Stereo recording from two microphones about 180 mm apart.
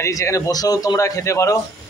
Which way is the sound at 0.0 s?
15° left (ahead or behind).